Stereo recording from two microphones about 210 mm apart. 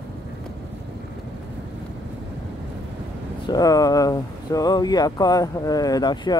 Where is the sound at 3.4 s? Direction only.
15° left (ahead or behind).